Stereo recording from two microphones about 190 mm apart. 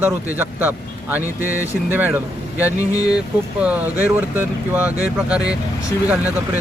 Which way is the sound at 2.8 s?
20° left (ahead or behind).